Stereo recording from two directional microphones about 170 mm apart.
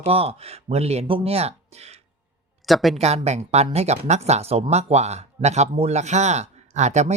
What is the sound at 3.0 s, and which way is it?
Speech, 40° right (ahead or behind).